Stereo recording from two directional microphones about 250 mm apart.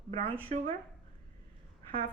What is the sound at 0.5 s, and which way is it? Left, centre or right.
Speech, right.